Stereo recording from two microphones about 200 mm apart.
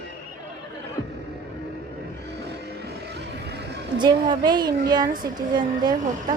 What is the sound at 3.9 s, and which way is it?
Speech, 25° right (ahead or behind).